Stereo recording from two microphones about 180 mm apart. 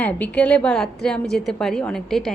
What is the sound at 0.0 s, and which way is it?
A woman's voice, 10° left (ahead or behind).